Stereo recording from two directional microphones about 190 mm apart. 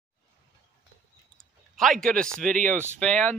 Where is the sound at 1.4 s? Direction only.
Centre (ahead or behind).